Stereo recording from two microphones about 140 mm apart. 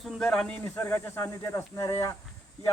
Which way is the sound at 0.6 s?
15° left (ahead or behind).